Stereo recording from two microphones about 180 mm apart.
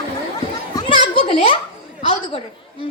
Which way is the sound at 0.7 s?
25° left (ahead or behind).